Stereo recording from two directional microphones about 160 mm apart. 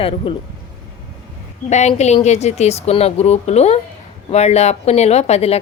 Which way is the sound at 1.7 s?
45° left (ahead or behind).